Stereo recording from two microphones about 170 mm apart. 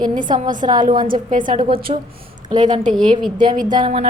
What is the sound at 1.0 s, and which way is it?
Speech, 55° right (ahead or behind).